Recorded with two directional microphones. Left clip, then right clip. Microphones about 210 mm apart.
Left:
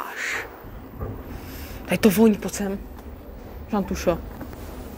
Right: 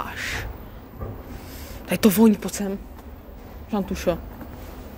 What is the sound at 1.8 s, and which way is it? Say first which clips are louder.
Speech: even; 25° right (ahead or behind).